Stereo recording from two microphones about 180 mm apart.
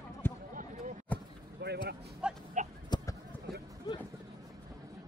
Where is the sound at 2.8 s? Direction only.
25° left (ahead or behind).